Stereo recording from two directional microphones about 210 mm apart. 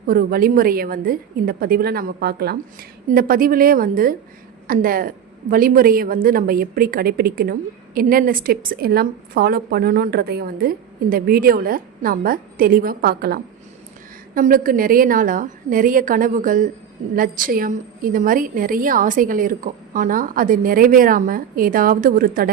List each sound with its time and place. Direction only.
0.1 s a woman's voice: 45° right (ahead or behind)